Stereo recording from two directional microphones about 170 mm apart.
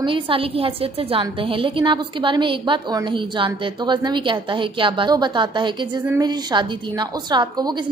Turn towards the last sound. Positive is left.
turn(degrees=-25)  # may be behind; listen again after turning